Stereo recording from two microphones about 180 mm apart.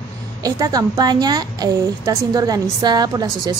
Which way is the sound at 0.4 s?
20° right (ahead or behind).